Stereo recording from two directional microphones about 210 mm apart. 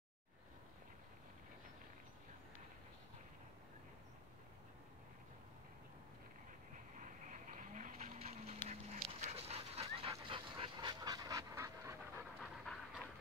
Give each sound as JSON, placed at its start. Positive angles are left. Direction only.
{"t": 7.0, "sound": "dog", "side_deg": -35}
{"t": 12.4, "sound": "pant", "side_deg": 0}